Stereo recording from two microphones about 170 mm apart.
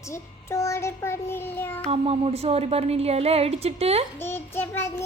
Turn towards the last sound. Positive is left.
turn(degrees=15)  # may be behind; listen again after turning